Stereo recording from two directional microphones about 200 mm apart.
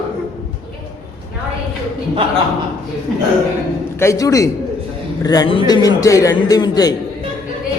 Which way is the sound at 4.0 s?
15° left (ahead or behind).